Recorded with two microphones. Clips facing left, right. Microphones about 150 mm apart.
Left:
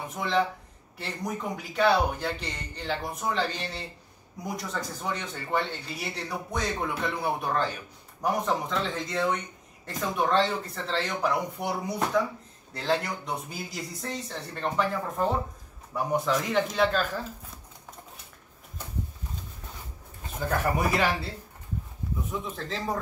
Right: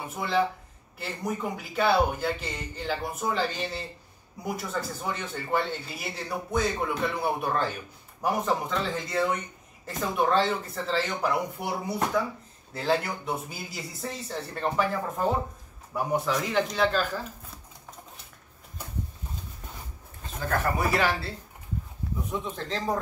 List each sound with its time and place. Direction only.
0.1 s speech: 5° right (ahead or behind)
20.9 s speech: 15° left (ahead or behind)
22.3 s speech: centre (ahead or behind)